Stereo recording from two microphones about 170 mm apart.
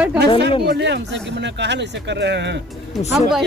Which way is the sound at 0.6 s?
90° right.